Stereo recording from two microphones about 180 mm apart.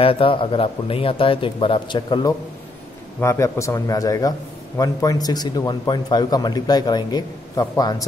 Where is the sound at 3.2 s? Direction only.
15° left (ahead or behind).